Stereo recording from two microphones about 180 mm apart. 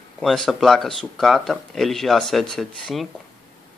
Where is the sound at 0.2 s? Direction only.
Centre (ahead or behind).